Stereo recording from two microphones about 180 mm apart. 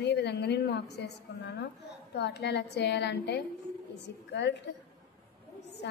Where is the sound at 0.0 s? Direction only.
70° left (ahead or behind).